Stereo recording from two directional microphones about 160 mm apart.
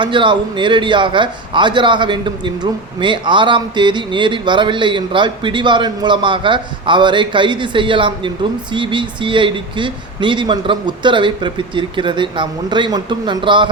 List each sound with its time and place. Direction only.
0.0 s speech: 30° right (ahead or behind)